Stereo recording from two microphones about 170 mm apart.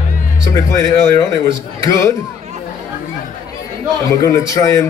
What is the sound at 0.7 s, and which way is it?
A man's voice, 20° left (ahead or behind).